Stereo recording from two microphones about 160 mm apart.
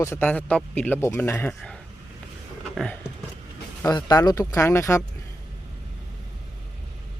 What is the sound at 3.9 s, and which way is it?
Speech, 25° left (ahead or behind).